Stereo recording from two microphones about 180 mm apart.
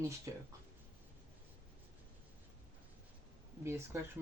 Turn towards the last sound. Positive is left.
turn(degrees=-15)  # may be behind; listen again after turning